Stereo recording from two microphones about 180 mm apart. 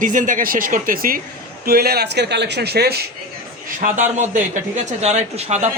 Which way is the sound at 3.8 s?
45° right (ahead or behind).